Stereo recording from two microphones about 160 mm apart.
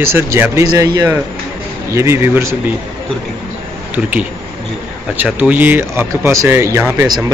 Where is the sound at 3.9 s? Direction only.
10° right (ahead or behind).